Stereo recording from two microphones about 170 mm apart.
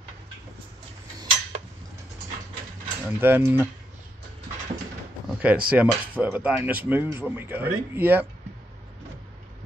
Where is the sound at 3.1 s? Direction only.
10° right (ahead or behind).